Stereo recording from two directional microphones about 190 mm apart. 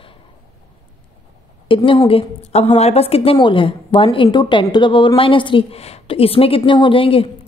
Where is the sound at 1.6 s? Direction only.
25° left (ahead or behind).